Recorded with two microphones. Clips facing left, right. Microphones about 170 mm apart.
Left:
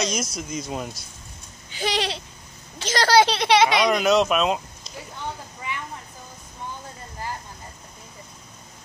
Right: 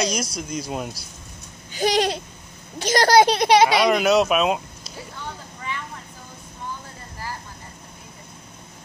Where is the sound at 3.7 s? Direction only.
5° right (ahead or behind).